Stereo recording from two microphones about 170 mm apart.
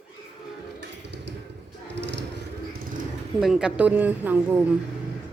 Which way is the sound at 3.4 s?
5° right (ahead or behind).